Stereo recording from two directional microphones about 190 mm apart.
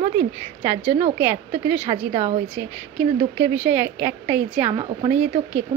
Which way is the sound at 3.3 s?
10° right (ahead or behind).